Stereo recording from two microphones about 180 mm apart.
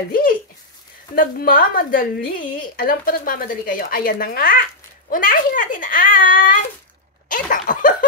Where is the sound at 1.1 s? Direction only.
55° left (ahead or behind).